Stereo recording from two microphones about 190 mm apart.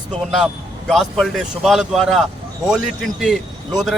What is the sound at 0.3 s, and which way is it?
A man's voice, centre (ahead or behind).